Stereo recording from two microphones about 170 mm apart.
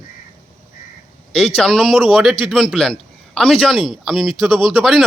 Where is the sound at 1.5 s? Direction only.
5° left (ahead or behind).